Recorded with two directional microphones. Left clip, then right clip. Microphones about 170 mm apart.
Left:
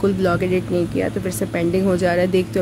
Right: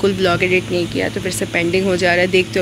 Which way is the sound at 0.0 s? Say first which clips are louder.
Right 3 dB; 10° left (ahead or behind).